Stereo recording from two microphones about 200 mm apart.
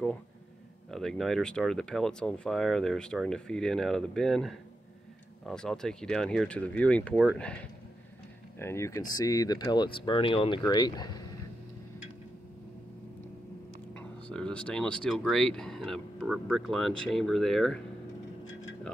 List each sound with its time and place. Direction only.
0.8 s speech: centre (ahead or behind)
8.5 s speech: 15° left (ahead or behind)
14.2 s speech: 5° left (ahead or behind)